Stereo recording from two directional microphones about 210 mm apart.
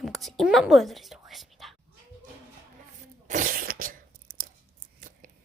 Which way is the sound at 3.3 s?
40° right (ahead or behind).